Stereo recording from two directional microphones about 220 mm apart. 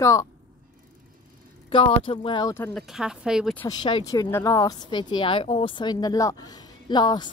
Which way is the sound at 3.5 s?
20° left (ahead or behind).